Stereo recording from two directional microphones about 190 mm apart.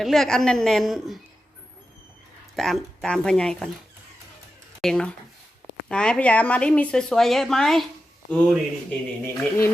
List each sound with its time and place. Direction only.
0.0 s a woman's voice: centre (ahead or behind)
2.6 s a woman's voice: centre (ahead or behind)
4.8 s a woman's voice: 5° left (ahead or behind)